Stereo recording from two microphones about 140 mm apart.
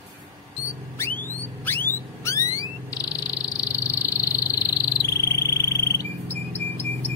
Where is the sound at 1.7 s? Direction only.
15° left (ahead or behind).